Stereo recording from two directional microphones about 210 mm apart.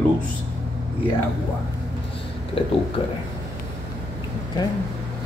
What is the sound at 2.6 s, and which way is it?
Speech, 25° left (ahead or behind).